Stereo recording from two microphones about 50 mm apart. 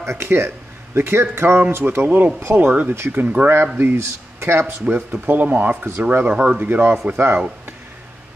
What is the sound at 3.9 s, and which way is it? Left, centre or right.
Speech, right.